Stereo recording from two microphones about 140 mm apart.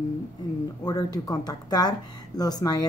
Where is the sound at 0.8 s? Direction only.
25° left (ahead or behind).